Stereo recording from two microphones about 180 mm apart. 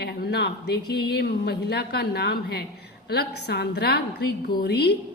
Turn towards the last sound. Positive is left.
turn(degrees=65)  # may be behind; listen again after turning